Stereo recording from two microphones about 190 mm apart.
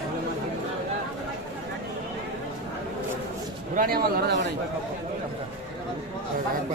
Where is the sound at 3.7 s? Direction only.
50° right (ahead or behind).